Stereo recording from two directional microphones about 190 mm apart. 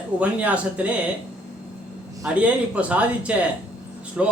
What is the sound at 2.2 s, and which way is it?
A man's voice, 5° right (ahead or behind).